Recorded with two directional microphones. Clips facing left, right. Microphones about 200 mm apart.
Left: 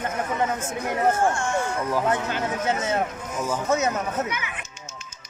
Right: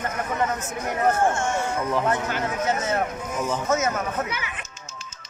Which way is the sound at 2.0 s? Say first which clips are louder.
Even; 20° left (ahead or behind).